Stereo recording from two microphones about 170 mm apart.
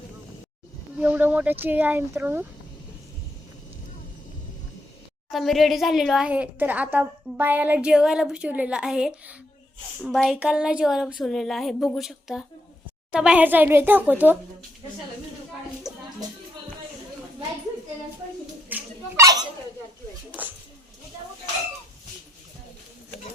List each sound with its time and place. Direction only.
0.9 s speech: 10° right (ahead or behind)
5.3 s a woman's voice: centre (ahead or behind)
15.9 s music: 5° right (ahead or behind)
18.7 s dog: 20° right (ahead or behind)
20.3 s speech: 5° right (ahead or behind)